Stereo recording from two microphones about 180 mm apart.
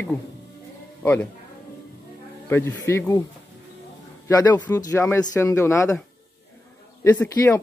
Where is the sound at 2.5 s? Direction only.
15° left (ahead or behind).